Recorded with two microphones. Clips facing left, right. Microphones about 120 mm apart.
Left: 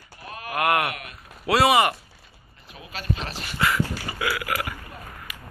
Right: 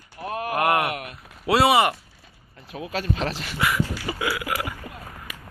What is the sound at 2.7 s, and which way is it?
Speech, 90° right.